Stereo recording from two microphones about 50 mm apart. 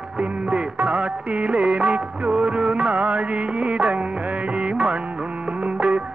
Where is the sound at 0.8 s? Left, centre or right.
Right.